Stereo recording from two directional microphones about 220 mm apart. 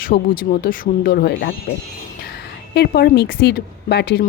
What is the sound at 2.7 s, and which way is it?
Speech, 45° left (ahead or behind).